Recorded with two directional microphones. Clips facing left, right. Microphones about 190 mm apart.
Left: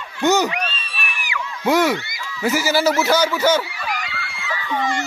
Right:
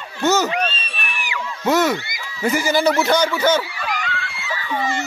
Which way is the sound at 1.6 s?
10° left (ahead or behind).